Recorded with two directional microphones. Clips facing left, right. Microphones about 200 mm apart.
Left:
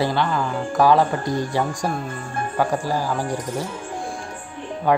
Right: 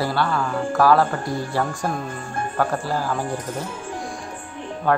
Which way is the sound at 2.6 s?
15° left (ahead or behind).